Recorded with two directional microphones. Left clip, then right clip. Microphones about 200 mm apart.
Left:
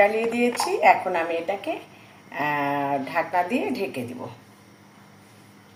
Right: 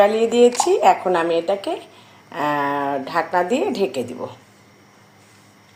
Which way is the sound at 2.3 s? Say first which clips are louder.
Right 4 dB; 35° right (ahead or behind).